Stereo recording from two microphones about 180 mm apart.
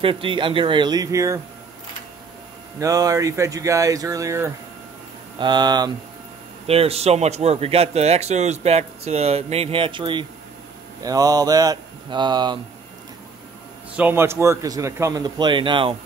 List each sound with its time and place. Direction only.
0.0 s speech: 30° right (ahead or behind)
2.8 s speech: 20° right (ahead or behind)
6.7 s a man's voice: 35° right (ahead or behind)
13.9 s a man's voice: 10° right (ahead or behind); by 16.0 s 30° right (ahead or behind)